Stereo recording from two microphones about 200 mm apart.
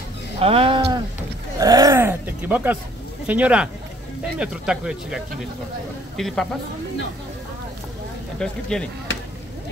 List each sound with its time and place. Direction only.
0.4 s speech: 30° right (ahead or behind)
1.6 s a sound: 15° right (ahead or behind)
3.3 s speech: 5° right (ahead or behind)
8.4 s speech: 5° left (ahead or behind)